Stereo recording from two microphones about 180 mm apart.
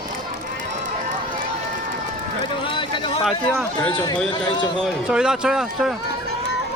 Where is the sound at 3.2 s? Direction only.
Centre (ahead or behind).